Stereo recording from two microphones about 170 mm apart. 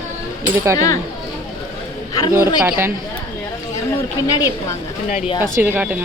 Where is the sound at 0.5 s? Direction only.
15° right (ahead or behind).